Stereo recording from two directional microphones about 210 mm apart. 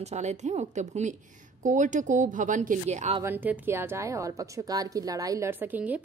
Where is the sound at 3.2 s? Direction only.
10° right (ahead or behind).